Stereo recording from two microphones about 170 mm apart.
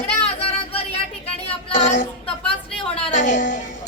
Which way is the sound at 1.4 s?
45° left (ahead or behind).